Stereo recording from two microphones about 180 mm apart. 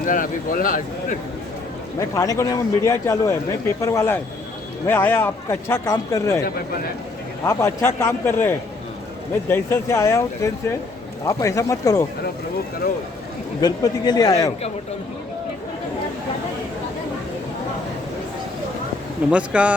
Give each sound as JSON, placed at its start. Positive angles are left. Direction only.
{"t": 0.0, "sound": "speech", "side_deg": 50}
{"t": 2.0, "sound": "a man's voice", "side_deg": 15}
{"t": 7.4, "sound": "a man's voice", "side_deg": 15}
{"t": 13.6, "sound": "speech", "side_deg": 20}
{"t": 19.3, "sound": "speech", "side_deg": -5}